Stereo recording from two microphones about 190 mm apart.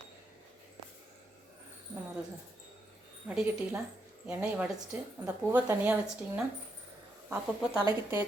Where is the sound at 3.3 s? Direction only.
10° right (ahead or behind).